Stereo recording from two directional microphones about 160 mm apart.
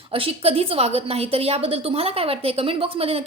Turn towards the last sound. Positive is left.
turn(degrees=-40)  # may be behind; listen again after turning